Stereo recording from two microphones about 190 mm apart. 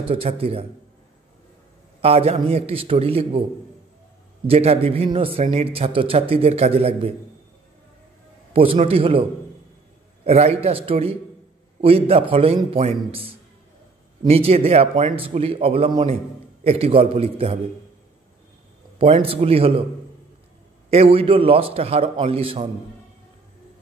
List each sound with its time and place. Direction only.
0.0 s speech: 30° right (ahead or behind)
2.0 s speech: 30° right (ahead or behind)
4.5 s speech: 30° right (ahead or behind)
8.7 s a man's voice: 30° right (ahead or behind)
10.2 s a man's voice: 35° right (ahead or behind)
19.2 s a man's voice: 30° right (ahead or behind)
20.9 s a man's voice: 30° right (ahead or behind)